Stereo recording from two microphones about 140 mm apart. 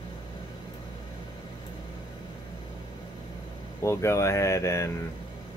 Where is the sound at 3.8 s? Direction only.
20° left (ahead or behind).